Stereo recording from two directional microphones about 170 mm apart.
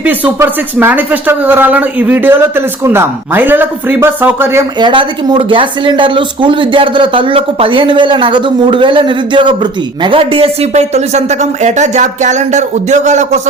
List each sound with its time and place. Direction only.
0.0 s speech: 10° right (ahead or behind)
4.8 s speech: 25° right (ahead or behind); by 13.5 s 45° right (ahead or behind)